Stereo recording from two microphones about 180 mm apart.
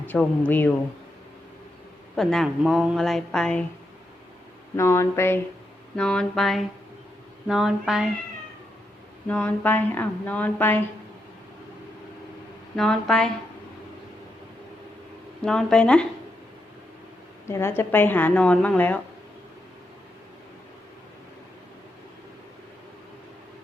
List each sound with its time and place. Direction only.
0.0 s speech: 10° left (ahead or behind)
2.1 s a woman's voice: centre (ahead or behind)
4.8 s a woman's voice: 15° left (ahead or behind); by 8.0 s centre (ahead or behind)
9.2 s speech: 10° left (ahead or behind)
12.7 s a woman's voice: centre (ahead or behind)
15.4 s a woman's voice: 5° left (ahead or behind)
17.4 s speech: 15° left (ahead or behind)